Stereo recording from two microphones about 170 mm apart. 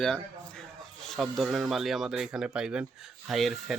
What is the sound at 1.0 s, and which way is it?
Speech, centre (ahead or behind).